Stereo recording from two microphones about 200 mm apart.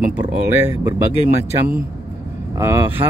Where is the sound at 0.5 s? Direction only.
10° right (ahead or behind).